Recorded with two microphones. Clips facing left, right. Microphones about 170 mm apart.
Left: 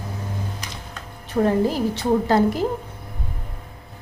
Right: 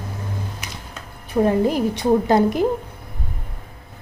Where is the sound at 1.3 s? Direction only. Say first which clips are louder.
Right 2 dB; 15° right (ahead or behind).